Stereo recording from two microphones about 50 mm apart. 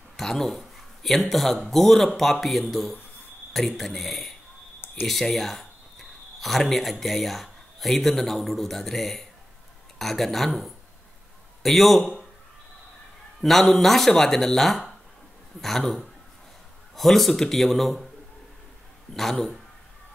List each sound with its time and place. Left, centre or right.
0.2 s speech: centre
4.7 s a sound: left
5.0 s a man's voice: centre
13.4 s speech: centre
16.9 s speech: centre
19.1 s speech: centre